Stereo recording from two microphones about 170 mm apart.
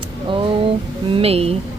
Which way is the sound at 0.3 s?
30° right (ahead or behind).